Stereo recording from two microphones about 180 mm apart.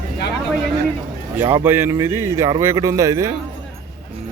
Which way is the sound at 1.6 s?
15° right (ahead or behind).